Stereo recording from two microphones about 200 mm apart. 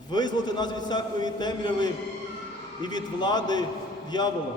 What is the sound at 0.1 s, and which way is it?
A man's voice, 20° left (ahead or behind).